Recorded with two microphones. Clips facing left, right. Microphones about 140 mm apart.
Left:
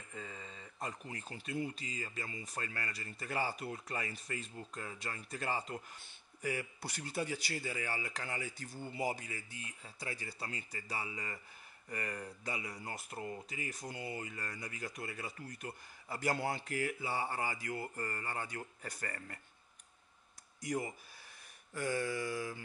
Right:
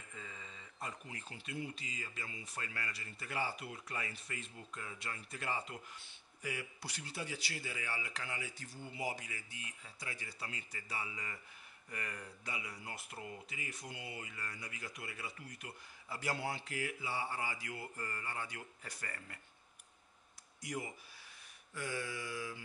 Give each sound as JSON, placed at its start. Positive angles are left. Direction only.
{"t": 0.1, "sound": "speech", "side_deg": 40}
{"t": 20.6, "sound": "speech", "side_deg": 40}